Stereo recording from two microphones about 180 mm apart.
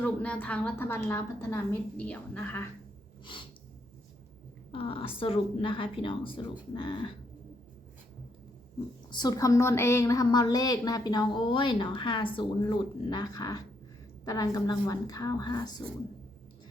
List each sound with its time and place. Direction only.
0.0 s a woman's voice: 10° left (ahead or behind)
4.7 s a woman's voice: 30° left (ahead or behind)
9.0 s a woman's voice: 25° left (ahead or behind)